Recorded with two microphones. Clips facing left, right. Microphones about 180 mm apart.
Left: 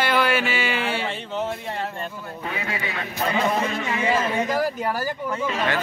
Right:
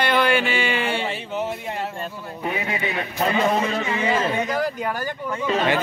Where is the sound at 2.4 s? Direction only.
20° right (ahead or behind).